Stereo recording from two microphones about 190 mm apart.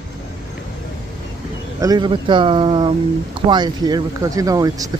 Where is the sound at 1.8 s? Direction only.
20° right (ahead or behind).